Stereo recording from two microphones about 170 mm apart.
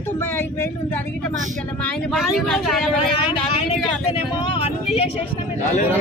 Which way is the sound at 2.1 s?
Centre (ahead or behind).